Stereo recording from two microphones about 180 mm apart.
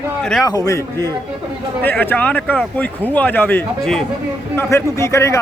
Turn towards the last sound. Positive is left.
turn(degrees=15)  # may be behind; listen again after turning